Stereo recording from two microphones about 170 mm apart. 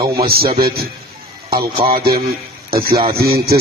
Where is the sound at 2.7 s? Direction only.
60° right (ahead or behind).